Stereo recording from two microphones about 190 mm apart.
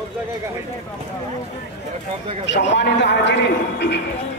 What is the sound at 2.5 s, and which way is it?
A man's voice, 65° left (ahead or behind).